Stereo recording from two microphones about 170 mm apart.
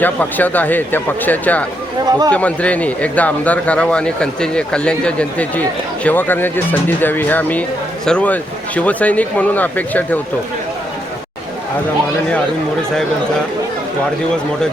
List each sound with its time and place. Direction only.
0.0 s speech: 10° left (ahead or behind)
2.0 s speech: 25° right (ahead or behind)
2.3 s speech: 10° left (ahead or behind)